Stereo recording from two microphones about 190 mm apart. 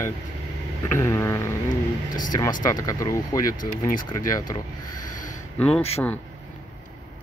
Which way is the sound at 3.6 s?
45° left (ahead or behind).